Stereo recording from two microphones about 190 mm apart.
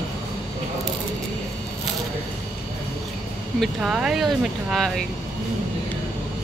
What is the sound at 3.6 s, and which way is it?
Speech, 5° right (ahead or behind).